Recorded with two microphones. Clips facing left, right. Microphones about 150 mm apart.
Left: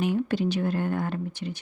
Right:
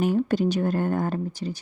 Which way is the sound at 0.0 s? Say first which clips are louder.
Right 3 dB; 45° right (ahead or behind).